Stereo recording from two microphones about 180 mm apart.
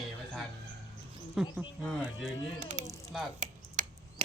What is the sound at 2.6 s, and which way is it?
Speech, 40° right (ahead or behind).